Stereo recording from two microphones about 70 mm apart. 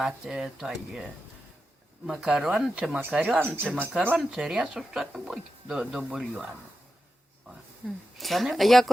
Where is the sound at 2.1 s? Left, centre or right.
Centre.